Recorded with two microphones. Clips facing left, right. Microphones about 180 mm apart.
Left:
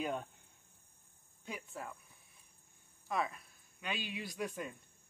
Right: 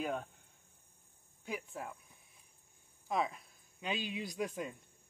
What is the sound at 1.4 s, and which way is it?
Speech, 10° right (ahead or behind).